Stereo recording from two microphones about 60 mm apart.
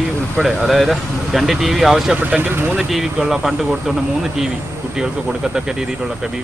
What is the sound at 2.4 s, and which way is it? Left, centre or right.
Speech, right.